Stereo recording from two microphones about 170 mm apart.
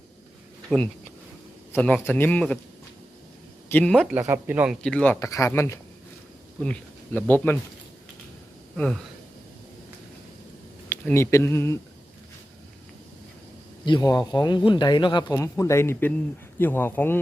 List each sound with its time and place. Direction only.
0.7 s a man's voice: 5° left (ahead or behind)
3.7 s a man's voice: 10° left (ahead or behind)
4.1 s speech: 10° right (ahead or behind)
4.8 s speech: 5° left (ahead or behind)
5.2 s a man's voice: 20° left (ahead or behind)
8.7 s speech: 5° left (ahead or behind)
10.8 s speech: 10° left (ahead or behind)
13.8 s speech: 25° left (ahead or behind)